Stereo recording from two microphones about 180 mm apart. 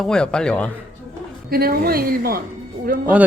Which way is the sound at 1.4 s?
55° right (ahead or behind).